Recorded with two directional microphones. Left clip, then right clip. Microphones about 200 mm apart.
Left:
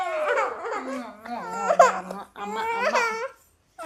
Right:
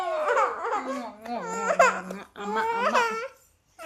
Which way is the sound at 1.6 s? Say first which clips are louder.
Left 3 dB; 5° left (ahead or behind).